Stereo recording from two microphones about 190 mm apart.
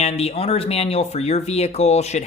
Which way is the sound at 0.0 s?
30° left (ahead or behind).